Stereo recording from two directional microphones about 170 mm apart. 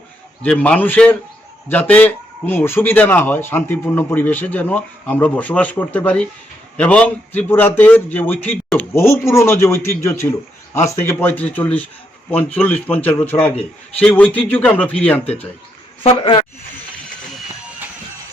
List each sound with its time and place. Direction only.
0.4 s a man's voice: 5° left (ahead or behind)
16.0 s a woman's voice: 30° left (ahead or behind)